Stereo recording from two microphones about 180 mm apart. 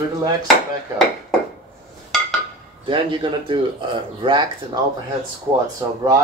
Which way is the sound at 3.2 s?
30° right (ahead or behind).